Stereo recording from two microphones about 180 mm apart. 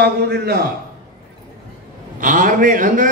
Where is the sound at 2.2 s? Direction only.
45° right (ahead or behind).